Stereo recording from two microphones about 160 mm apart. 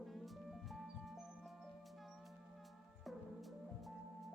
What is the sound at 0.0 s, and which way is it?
Music, centre (ahead or behind).